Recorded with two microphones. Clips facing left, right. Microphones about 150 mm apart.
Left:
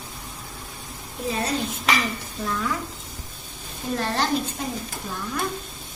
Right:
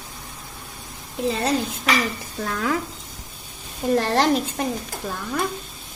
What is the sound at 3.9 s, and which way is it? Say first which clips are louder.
Speech: right 5 dB; 90° right.